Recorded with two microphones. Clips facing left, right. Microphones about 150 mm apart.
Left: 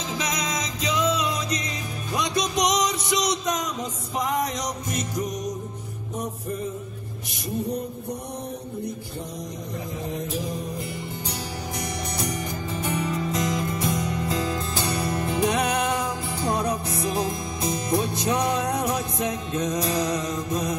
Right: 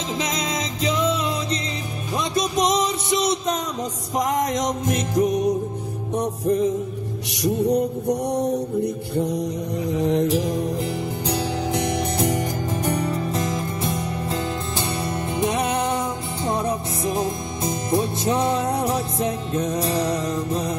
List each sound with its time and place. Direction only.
0.2 s music: 25° right (ahead or behind)
4.2 s music: 45° right (ahead or behind)
6.1 s music: 80° right
9.9 s mantra: 75° right (ahead or behind)
11.2 s music: 60° right (ahead or behind); by 20.7 s 30° right (ahead or behind)